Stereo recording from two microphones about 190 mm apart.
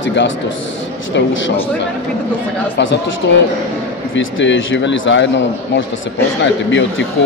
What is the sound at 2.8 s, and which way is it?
A man's voice, 65° left (ahead or behind).